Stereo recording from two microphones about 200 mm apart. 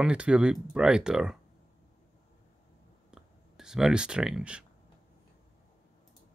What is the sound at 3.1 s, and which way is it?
Clicking, 5° right (ahead or behind).